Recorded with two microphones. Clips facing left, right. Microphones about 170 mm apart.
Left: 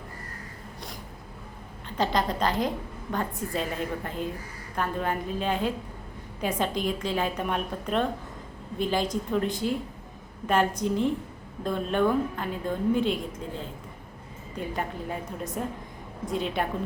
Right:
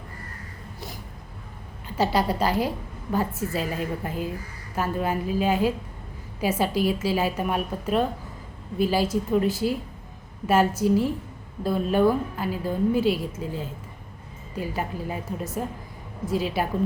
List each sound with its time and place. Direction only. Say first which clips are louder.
2.0 s a woman's voice: right 3 dB; 10° right (ahead or behind)